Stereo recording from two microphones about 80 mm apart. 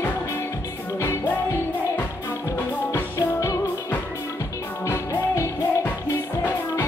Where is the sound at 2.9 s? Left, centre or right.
Left.